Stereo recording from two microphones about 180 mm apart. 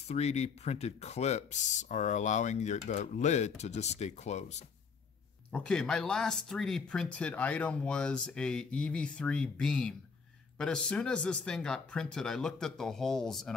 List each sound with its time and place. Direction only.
0.1 s speech: 35° left (ahead or behind)
5.5 s speech: 5° left (ahead or behind)